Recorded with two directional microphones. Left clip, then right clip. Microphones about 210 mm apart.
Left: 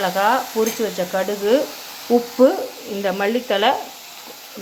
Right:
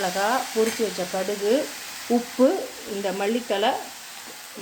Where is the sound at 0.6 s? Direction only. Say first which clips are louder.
Left 3 dB; 20° left (ahead or behind).